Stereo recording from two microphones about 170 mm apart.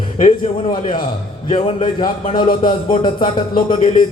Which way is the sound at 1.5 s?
30° left (ahead or behind).